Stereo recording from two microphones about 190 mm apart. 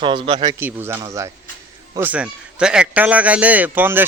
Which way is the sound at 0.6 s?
10° right (ahead or behind).